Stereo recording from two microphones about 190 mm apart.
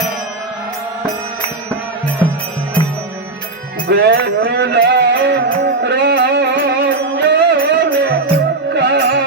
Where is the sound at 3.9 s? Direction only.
60° right (ahead or behind).